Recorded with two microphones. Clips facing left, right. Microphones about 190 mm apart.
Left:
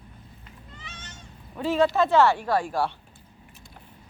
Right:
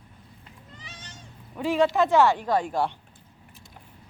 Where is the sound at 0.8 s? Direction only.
35° right (ahead or behind).